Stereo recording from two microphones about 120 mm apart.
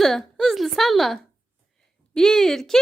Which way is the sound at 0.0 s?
5° left (ahead or behind).